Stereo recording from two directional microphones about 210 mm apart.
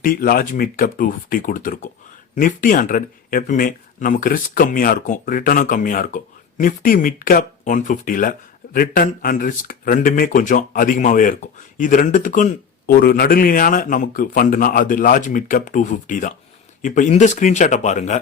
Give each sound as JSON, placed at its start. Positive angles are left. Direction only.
{"t": 0.0, "sound": "speech", "side_deg": 45}